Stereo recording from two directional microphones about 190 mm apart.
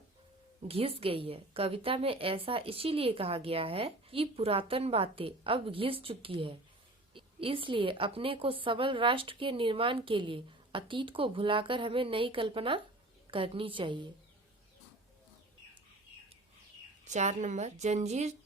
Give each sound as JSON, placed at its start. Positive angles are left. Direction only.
{"t": 0.7, "sound": "a woman's voice", "side_deg": -30}
{"t": 17.1, "sound": "a woman's voice", "side_deg": -40}